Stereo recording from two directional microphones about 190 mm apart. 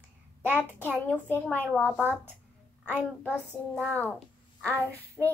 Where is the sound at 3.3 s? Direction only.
10° right (ahead or behind).